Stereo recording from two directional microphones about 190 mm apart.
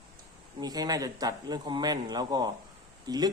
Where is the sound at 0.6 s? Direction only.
20° right (ahead or behind).